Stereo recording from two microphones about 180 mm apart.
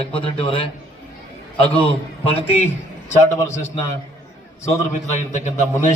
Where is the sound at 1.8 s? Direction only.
30° left (ahead or behind).